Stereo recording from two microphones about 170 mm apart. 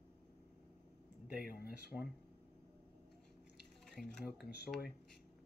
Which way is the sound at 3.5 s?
5° left (ahead or behind).